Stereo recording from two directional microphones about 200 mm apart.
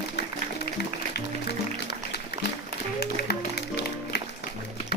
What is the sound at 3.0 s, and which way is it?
Music, 50° left (ahead or behind).